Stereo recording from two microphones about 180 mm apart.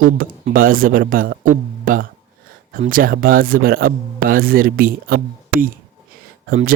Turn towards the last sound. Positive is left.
turn(degrees=-50)  # may be behind; listen again after turning